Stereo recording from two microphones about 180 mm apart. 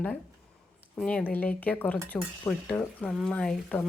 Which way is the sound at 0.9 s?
5° left (ahead or behind).